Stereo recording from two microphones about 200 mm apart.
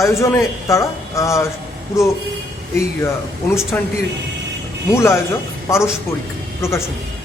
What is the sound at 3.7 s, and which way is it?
A man's voice, 5° left (ahead or behind).